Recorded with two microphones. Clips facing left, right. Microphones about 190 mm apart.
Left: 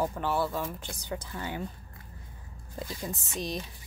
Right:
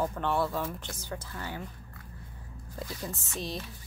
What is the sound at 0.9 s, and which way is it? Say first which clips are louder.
Speech: left 2 dB; 15° left (ahead or behind).